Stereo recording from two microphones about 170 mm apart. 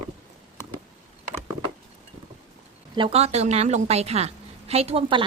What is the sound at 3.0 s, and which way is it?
A woman's voice, 35° right (ahead or behind).